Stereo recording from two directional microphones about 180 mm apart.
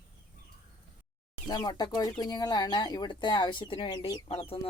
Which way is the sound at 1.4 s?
20° left (ahead or behind).